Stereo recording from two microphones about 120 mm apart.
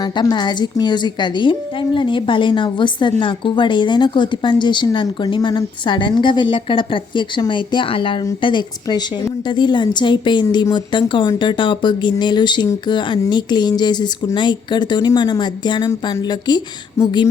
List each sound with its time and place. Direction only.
0.0 s a woman's voice: 35° left (ahead or behind)